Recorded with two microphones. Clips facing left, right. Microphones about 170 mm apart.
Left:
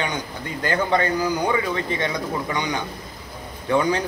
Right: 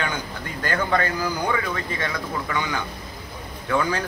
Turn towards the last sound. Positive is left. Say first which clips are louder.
# left 3 dB
turn(degrees=20)  # may be behind; listen again after turning